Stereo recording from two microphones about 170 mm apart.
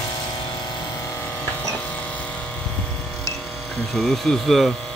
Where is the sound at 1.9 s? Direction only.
10° left (ahead or behind).